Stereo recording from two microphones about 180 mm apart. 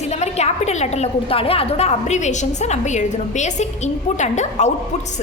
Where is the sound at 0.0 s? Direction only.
40° left (ahead or behind).